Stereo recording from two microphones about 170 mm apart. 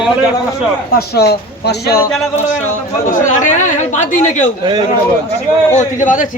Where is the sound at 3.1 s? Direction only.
45° left (ahead or behind).